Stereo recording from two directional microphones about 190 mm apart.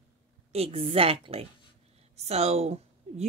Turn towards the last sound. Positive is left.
turn(degrees=-35)  # may be behind; listen again after turning